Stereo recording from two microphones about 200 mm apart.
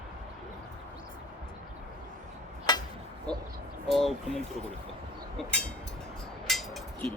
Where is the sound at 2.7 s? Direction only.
20° left (ahead or behind).